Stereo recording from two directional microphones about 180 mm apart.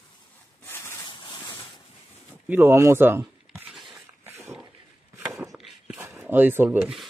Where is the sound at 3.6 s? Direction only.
Centre (ahead or behind).